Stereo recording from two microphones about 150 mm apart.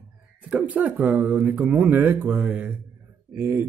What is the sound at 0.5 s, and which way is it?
Speech, 10° right (ahead or behind).